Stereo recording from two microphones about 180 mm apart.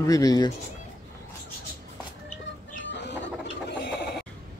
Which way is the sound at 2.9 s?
80° left.